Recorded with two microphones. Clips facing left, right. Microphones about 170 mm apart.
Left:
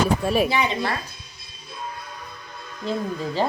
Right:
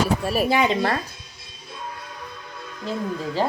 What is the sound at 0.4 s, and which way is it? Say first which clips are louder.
Speech: right 3 dB; 45° right (ahead or behind).